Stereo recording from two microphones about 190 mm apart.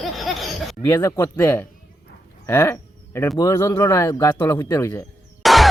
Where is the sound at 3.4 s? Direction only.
15° left (ahead or behind).